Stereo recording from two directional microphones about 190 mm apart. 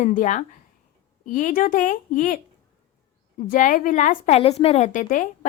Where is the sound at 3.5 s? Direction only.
45° left (ahead or behind); by 4.9 s 30° left (ahead or behind).